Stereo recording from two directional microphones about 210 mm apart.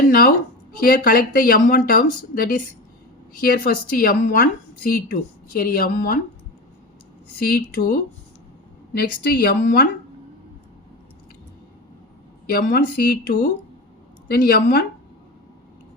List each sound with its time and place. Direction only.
0.1 s a woman's voice: 45° left (ahead or behind)
7.3 s a woman's voice: 45° left (ahead or behind)
12.5 s a woman's voice: 45° left (ahead or behind)